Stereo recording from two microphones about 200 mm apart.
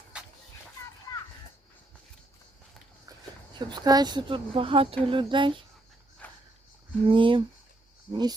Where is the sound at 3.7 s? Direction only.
20° right (ahead or behind).